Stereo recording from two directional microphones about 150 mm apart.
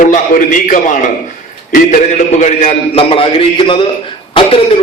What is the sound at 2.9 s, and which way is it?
Speech, 35° left (ahead or behind).